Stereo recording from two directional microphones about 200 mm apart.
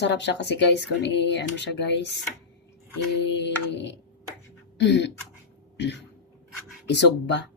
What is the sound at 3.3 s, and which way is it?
Speech, 60° left (ahead or behind).